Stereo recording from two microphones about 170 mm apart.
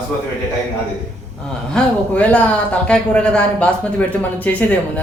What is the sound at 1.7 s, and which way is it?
Speech, 10° left (ahead or behind).